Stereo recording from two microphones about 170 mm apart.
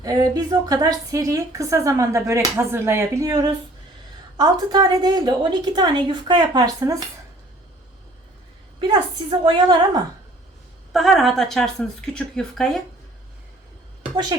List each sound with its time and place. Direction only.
0.0 s a woman's voice: 20° right (ahead or behind)
9.4 s a woman's voice: 30° right (ahead or behind)
10.9 s speech: centre (ahead or behind)
14.0 s a sound: 25° right (ahead or behind)